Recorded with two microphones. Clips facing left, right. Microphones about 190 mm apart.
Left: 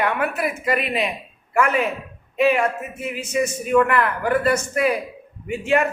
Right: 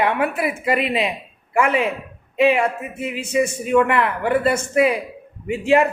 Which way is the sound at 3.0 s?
30° right (ahead or behind).